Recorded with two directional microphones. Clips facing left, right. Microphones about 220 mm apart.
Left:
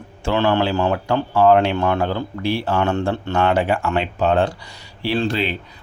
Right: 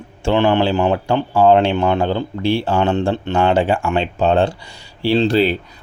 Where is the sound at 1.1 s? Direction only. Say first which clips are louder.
Right 1 dB; 25° right (ahead or behind).